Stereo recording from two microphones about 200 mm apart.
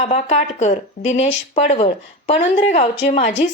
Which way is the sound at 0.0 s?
35° left (ahead or behind).